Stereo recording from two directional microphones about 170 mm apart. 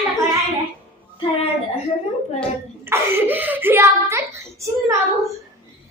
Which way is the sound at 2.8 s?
15° right (ahead or behind).